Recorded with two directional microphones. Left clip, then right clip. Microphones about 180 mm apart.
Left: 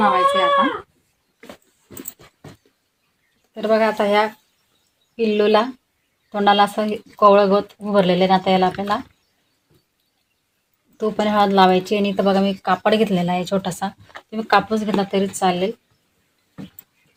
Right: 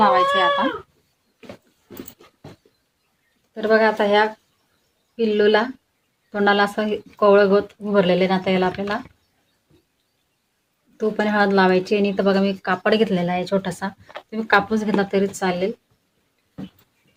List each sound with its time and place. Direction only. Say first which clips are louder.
0.0 s speech: even; 15° right (ahead or behind)
3.5 s speech: right 1 dB; 35° left (ahead or behind); by 8.7 s 15° left (ahead or behind)
10.9 s speech: left 2 dB; 20° left (ahead or behind)